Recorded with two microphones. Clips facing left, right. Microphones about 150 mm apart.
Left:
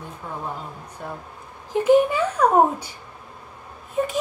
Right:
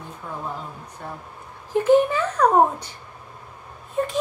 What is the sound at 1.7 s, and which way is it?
Speech, 15° left (ahead or behind).